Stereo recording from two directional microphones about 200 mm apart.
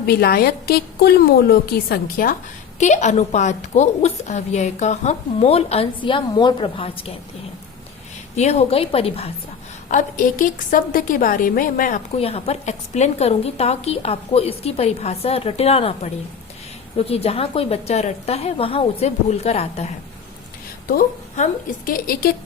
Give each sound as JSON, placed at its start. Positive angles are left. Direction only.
{"t": 0.0, "sound": "a woman's voice", "side_deg": 50}
{"t": 2.7, "sound": "a woman's voice", "side_deg": 35}
{"t": 8.4, "sound": "a woman's voice", "side_deg": 35}
{"t": 9.9, "sound": "a woman's voice", "side_deg": 40}
{"t": 17.0, "sound": "a woman's voice", "side_deg": 30}
{"t": 20.8, "sound": "a woman's voice", "side_deg": 40}